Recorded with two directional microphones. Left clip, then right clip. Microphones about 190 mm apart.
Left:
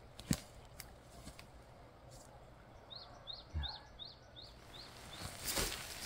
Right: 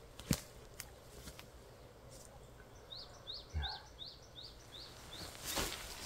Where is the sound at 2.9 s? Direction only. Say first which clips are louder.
Right 1 dB; 30° right (ahead or behind).